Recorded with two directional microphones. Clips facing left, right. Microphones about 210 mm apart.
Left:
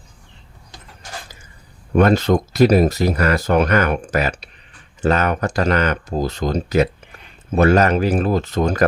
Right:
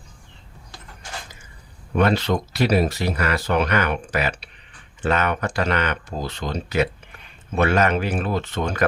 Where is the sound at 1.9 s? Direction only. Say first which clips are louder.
Left 5 dB; 45° left (ahead or behind).